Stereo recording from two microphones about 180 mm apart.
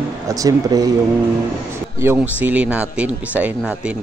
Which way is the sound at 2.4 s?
10° right (ahead or behind).